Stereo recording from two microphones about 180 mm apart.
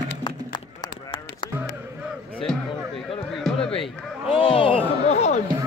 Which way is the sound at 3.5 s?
30° left (ahead or behind).